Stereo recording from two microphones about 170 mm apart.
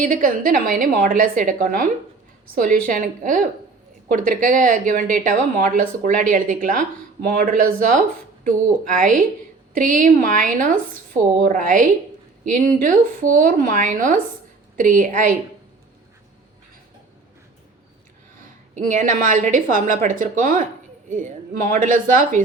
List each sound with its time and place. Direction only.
0.0 s a woman's voice: 55° right (ahead or behind)
18.7 s a woman's voice: 50° right (ahead or behind)